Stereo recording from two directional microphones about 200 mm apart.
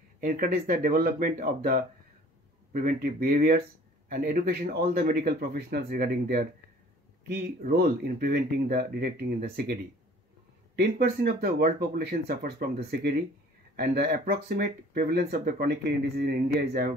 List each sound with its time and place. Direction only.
0.2 s speech: 45° right (ahead or behind)
10.8 s speech: 50° right (ahead or behind)